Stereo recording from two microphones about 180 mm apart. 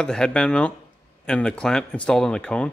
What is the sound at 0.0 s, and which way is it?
Speech, 5° left (ahead or behind).